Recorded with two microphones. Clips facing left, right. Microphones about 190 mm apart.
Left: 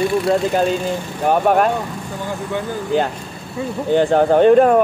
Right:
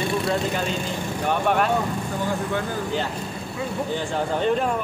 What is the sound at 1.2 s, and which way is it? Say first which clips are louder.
Speech: left 7 dB; 45° left (ahead or behind).